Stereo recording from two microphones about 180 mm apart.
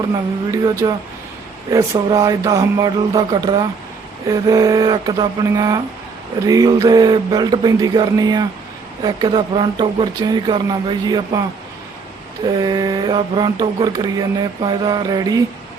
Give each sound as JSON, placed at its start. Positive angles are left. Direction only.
{"t": 0.5, "sound": "mantra", "side_deg": -20}
{"t": 12.5, "sound": "mantra", "side_deg": -20}